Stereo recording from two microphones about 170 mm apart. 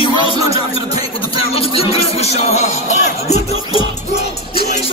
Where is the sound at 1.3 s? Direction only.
35° left (ahead or behind).